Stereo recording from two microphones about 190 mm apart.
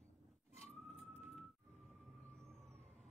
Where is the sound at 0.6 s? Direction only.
Centre (ahead or behind).